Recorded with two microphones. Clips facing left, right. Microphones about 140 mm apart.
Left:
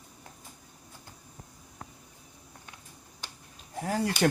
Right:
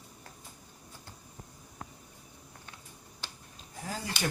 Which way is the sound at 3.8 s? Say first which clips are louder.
Left 9 dB; 65° left (ahead or behind).